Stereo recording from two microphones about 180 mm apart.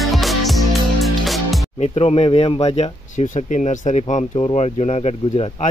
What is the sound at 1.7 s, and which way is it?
Speech, 35° left (ahead or behind).